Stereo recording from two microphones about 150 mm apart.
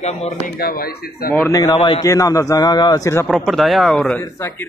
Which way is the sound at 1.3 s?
20° left (ahead or behind).